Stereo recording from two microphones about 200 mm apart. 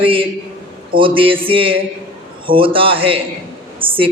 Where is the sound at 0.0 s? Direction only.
25° right (ahead or behind).